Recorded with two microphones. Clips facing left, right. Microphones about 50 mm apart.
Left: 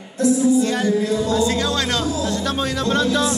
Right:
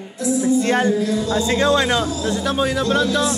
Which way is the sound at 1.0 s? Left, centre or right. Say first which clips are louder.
Even; left.